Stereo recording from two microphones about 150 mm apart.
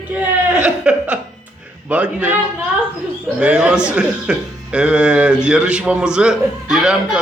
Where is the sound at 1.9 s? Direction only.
10° right (ahead or behind).